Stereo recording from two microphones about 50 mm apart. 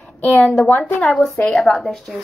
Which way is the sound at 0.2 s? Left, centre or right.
Left.